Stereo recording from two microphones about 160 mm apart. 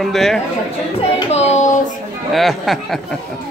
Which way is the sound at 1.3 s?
45° left (ahead or behind).